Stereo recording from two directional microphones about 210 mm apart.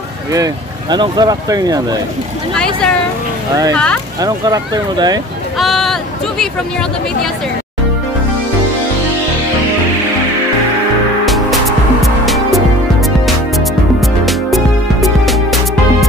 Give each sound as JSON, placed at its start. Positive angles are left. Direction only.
{"t": 0.3, "sound": "speech", "side_deg": -20}
{"t": 2.5, "sound": "speech", "side_deg": 5}
{"t": 4.2, "sound": "speech", "side_deg": -20}
{"t": 5.6, "sound": "a sound", "side_deg": 0}
{"t": 11.2, "sound": "music", "side_deg": 0}
{"t": 14.2, "sound": "music", "side_deg": 0}